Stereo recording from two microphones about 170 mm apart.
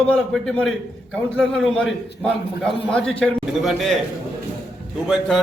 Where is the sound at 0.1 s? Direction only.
5° left (ahead or behind).